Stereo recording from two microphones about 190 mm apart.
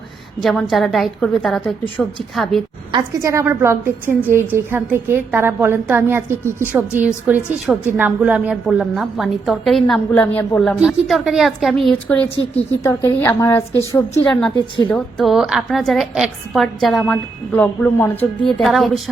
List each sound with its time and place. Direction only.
0.4 s a woman's voice: centre (ahead or behind)
2.9 s a woman's voice: 15° right (ahead or behind); by 14.0 s 15° left (ahead or behind)
14.8 s a woman's voice: 5° left (ahead or behind)